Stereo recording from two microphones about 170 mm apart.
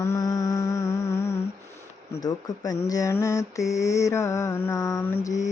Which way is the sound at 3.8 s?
20° left (ahead or behind).